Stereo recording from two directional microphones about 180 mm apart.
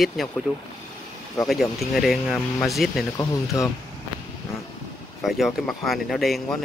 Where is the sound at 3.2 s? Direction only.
20° left (ahead or behind).